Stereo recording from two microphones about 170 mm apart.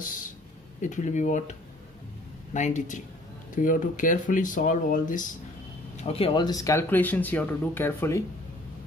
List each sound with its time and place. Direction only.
0.0 s a sound: 50° left (ahead or behind)
0.7 s speech: 45° left (ahead or behind)
6.0 s speech: 35° left (ahead or behind); by 8.2 s 15° left (ahead or behind)